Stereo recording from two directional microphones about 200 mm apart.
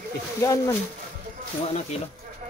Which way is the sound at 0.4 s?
15° left (ahead or behind).